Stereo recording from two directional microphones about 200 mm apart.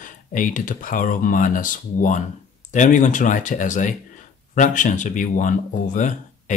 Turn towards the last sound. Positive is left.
turn(degrees=40)  # may be behind; listen again after turning